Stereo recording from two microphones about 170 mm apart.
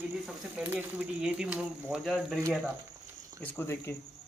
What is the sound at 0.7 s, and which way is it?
Speech, 10° right (ahead or behind).